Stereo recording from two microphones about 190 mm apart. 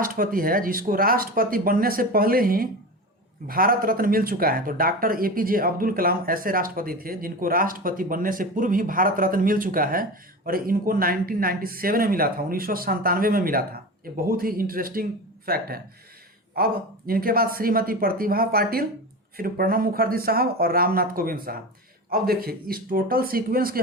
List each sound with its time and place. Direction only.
0.0 s speech: 45° right (ahead or behind)